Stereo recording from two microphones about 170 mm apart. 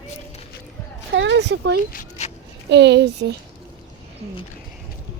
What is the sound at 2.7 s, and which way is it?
Speech, 85° right.